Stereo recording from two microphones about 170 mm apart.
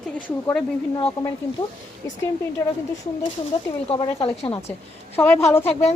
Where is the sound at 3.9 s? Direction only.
25° left (ahead or behind).